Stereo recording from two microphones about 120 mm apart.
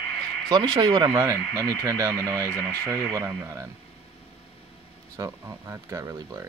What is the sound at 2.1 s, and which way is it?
Speech, 15° left (ahead or behind).